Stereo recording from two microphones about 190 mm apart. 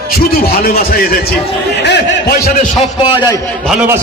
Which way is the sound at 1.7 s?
65° left (ahead or behind).